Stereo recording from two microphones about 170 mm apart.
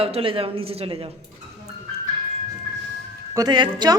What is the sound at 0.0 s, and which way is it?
Speech, 35° right (ahead or behind).